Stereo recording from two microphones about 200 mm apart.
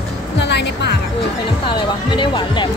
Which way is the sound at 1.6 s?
25° left (ahead or behind).